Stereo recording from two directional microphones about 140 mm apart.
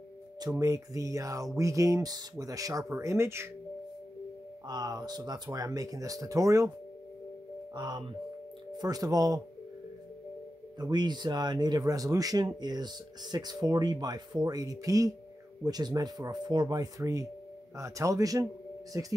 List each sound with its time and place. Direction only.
0.4 s speech: 25° right (ahead or behind)
4.6 s speech: 25° right (ahead or behind)
7.7 s speech: 30° right (ahead or behind)
10.8 s speech: 30° right (ahead or behind)